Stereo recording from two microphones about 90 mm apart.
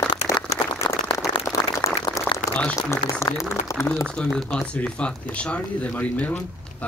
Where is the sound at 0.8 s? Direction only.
65° left (ahead or behind).